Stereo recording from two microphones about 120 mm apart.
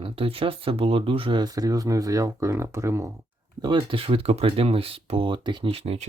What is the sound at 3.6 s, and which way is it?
Speech, 40° right (ahead or behind).